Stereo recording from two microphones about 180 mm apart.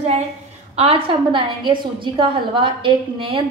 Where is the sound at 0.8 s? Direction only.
30° right (ahead or behind).